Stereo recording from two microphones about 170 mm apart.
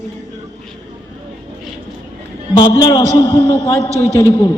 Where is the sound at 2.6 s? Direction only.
25° left (ahead or behind).